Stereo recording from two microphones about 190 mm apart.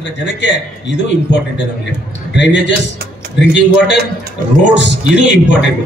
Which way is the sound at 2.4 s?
70° left (ahead or behind).